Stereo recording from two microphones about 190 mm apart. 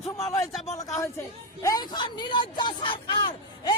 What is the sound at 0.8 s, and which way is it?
A woman's voice, 15° left (ahead or behind).